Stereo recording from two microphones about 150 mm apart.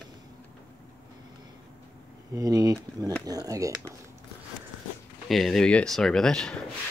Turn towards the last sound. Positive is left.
turn(degrees=5)  # may be behind; listen again after turning